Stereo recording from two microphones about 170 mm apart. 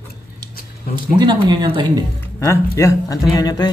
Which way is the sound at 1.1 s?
30° right (ahead or behind).